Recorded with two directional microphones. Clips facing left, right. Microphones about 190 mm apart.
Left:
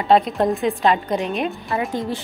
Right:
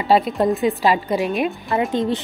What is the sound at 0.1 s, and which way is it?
A woman's voice, centre (ahead or behind).